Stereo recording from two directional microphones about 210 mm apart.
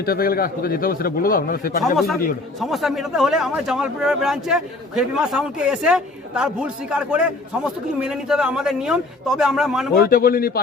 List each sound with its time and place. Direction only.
0.0 s a man's voice: 45° left (ahead or behind)
2.6 s speech: centre (ahead or behind)
9.9 s a man's voice: 45° left (ahead or behind)